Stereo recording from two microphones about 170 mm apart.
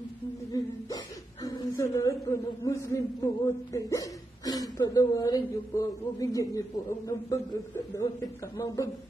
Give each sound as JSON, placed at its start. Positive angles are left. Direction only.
{"t": 0.5, "sound": "hiccup", "side_deg": 20}
{"t": 3.4, "sound": "speech", "side_deg": 20}